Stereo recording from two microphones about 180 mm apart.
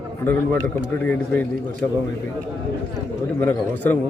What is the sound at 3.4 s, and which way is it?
Speech, 10° left (ahead or behind).